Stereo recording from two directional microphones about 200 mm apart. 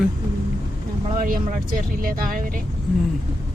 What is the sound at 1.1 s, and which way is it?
Speech, 45° right (ahead or behind).